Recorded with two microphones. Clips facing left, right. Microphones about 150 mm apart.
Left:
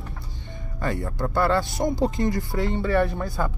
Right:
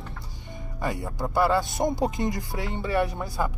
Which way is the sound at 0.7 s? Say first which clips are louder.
Left 2 dB; 10° right (ahead or behind).